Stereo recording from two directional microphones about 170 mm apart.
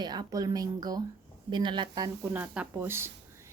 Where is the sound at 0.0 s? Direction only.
25° right (ahead or behind).